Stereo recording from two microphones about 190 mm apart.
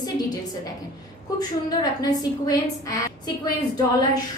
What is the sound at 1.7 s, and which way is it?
A woman's voice, 20° left (ahead or behind).